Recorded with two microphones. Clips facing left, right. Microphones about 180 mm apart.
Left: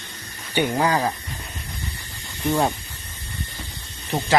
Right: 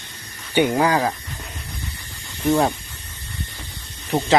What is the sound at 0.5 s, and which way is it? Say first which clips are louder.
Speech: right 3 dB; 15° right (ahead or behind).